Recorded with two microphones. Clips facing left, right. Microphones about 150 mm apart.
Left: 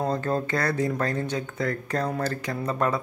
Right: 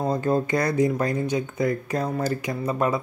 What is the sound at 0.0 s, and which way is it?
Speech, 10° right (ahead or behind).